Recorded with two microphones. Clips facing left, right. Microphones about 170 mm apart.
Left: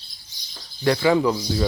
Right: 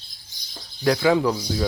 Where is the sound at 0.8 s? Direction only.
Centre (ahead or behind).